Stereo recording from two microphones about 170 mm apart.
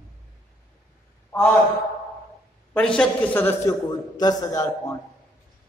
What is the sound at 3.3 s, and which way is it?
A man's voice, 15° left (ahead or behind).